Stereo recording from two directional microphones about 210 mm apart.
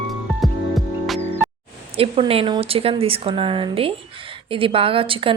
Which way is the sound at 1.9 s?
25° right (ahead or behind).